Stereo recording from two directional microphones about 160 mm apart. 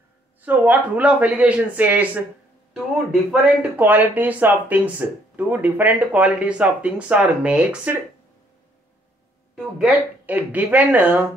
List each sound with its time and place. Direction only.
0.4 s speech: 10° right (ahead or behind)
3.3 s speech: 10° right (ahead or behind)
9.8 s speech: 5° right (ahead or behind)